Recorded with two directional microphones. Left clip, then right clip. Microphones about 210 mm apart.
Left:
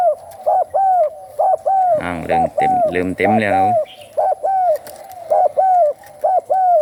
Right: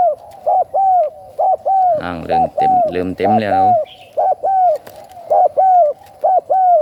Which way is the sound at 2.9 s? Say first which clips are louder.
Right 1 dB; 5° right (ahead or behind).